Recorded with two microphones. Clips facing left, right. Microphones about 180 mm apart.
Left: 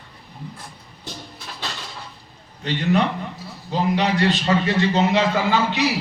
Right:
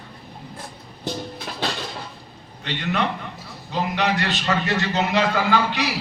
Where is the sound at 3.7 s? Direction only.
30° left (ahead or behind).